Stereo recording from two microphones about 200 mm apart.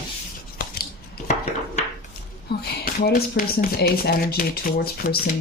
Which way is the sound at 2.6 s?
45° left (ahead or behind).